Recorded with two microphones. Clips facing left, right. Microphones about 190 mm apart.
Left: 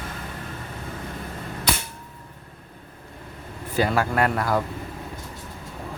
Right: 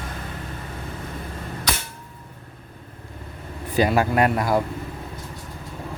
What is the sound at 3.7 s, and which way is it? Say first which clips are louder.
Speech: right 3 dB; 15° right (ahead or behind).